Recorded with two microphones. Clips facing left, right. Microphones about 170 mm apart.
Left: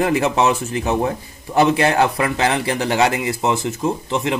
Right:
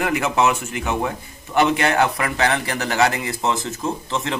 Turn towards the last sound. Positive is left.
turn(degrees=15)  # may be behind; listen again after turning